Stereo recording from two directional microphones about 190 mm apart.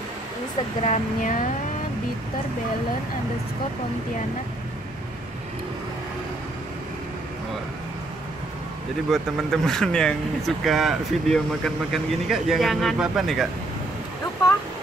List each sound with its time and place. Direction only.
0.8 s speech: 40° left (ahead or behind)
9.1 s speech: 5° left (ahead or behind)